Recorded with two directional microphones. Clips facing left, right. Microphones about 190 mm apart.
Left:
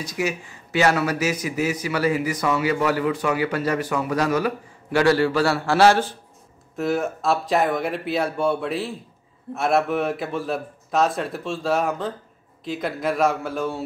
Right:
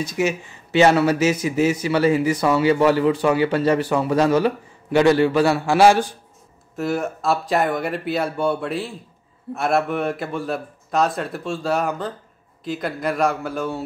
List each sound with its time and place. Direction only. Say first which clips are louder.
0.0 s a man's voice: right 4 dB; 25° right (ahead or behind)
6.8 s a man's voice: even; centre (ahead or behind)